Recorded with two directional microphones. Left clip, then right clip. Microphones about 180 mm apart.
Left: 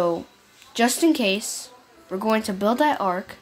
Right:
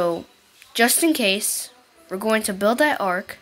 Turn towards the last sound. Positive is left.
turn(degrees=-20)  # may be behind; listen again after turning